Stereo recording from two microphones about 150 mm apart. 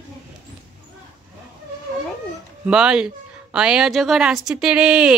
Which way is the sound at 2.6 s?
5° right (ahead or behind).